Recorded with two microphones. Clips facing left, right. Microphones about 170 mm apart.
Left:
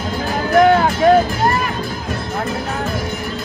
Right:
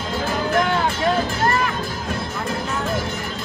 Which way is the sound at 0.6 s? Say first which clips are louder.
Left 11 dB; 50° left (ahead or behind).